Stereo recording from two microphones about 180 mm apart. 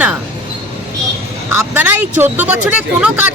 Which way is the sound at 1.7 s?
10° right (ahead or behind).